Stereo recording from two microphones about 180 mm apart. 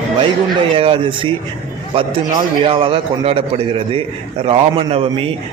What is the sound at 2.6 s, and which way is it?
A man's voice, 30° right (ahead or behind).